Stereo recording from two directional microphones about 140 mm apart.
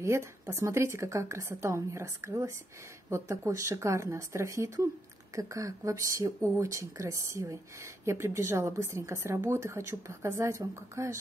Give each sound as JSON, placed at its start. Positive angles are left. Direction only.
{"t": 0.0, "sound": "speech", "side_deg": -20}